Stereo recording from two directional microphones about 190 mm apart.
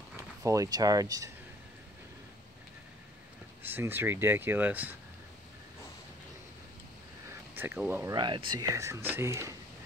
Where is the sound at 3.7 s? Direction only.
10° right (ahead or behind).